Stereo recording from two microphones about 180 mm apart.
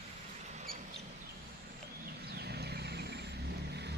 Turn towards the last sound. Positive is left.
turn(degrees=-65)  # may be behind; listen again after turning